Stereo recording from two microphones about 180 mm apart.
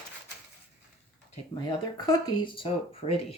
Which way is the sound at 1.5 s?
25° left (ahead or behind).